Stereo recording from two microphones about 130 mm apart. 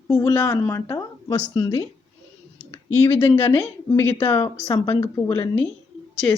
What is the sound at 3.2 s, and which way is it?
Speech, 20° left (ahead or behind).